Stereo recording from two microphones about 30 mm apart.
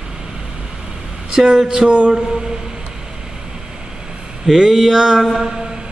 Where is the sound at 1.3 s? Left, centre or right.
Right.